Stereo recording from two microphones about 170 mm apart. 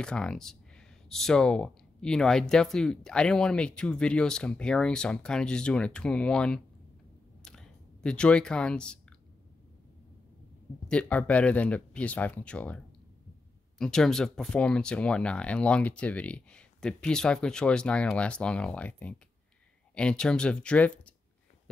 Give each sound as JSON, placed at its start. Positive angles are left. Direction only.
{"t": 0.0, "sound": "speech", "side_deg": 5}
{"t": 7.4, "sound": "clicking", "side_deg": 5}
{"t": 10.9, "sound": "speech", "side_deg": 5}